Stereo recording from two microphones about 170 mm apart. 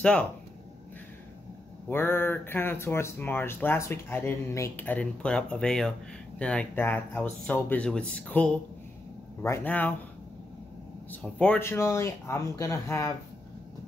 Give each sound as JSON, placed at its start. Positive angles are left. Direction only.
{"t": 0.0, "sound": "speech", "side_deg": 5}
{"t": 1.9, "sound": "speech", "side_deg": 15}
{"t": 11.1, "sound": "speech", "side_deg": 10}